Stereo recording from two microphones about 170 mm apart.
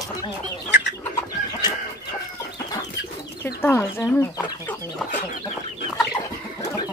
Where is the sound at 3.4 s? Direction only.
15° left (ahead or behind).